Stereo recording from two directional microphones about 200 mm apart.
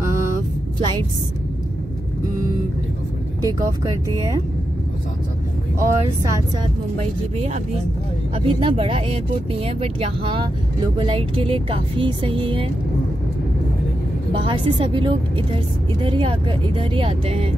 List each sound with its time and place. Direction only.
3.4 s speech: 15° right (ahead or behind)
5.8 s speech: 15° right (ahead or behind)
7.0 s speech: 35° right (ahead or behind)
14.3 s speech: 25° right (ahead or behind)